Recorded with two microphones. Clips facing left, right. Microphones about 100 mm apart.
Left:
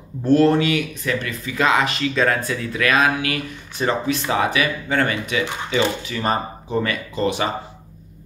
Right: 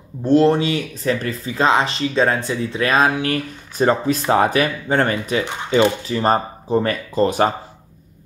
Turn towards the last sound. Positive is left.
turn(degrees=-40)  # may be behind; listen again after turning